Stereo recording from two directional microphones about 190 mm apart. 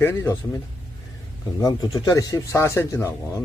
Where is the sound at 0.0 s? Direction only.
15° left (ahead or behind).